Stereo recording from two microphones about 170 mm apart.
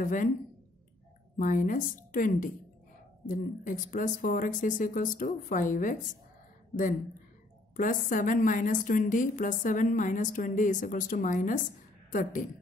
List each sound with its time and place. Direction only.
0.0 s a woman's voice: 50° left (ahead or behind)
1.3 s a woman's voice: 50° left (ahead or behind)
7.7 s a woman's voice: 50° left (ahead or behind)